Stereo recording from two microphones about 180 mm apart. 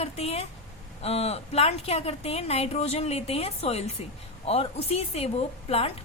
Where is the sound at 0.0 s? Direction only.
35° left (ahead or behind).